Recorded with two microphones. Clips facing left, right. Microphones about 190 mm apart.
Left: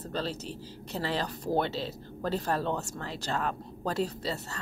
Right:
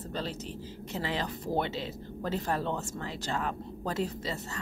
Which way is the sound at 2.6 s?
45° left (ahead or behind).